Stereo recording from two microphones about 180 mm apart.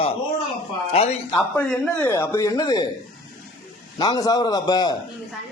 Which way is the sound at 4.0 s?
20° left (ahead or behind).